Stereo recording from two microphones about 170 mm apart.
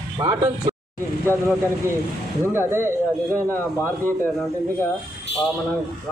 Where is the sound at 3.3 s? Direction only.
10° left (ahead or behind).